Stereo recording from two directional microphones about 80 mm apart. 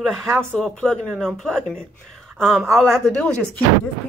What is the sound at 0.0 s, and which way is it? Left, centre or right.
A woman's voice, centre.